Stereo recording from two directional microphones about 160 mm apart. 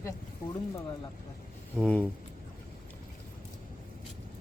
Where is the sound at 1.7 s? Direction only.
5° left (ahead or behind).